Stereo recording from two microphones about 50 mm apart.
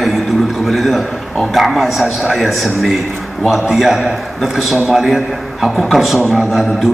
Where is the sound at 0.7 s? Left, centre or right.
Centre.